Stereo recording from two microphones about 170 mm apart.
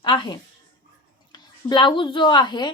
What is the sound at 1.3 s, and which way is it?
Speech, 25° left (ahead or behind).